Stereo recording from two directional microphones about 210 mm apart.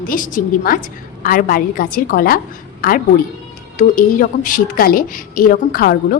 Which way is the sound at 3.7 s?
40° left (ahead or behind).